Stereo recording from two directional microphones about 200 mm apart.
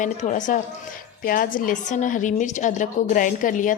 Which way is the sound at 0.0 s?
40° left (ahead or behind).